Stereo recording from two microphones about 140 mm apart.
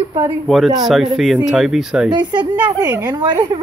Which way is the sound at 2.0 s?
30° right (ahead or behind).